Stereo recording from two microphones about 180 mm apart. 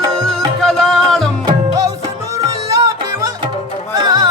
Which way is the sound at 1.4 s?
20° right (ahead or behind).